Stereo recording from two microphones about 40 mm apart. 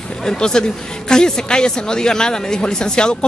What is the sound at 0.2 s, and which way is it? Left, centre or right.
A man's voice, centre.